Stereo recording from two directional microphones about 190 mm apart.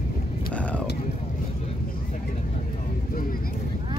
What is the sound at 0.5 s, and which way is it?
Music, 5° left (ahead or behind).